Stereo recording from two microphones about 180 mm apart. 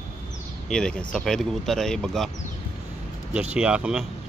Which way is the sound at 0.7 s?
5° left (ahead or behind).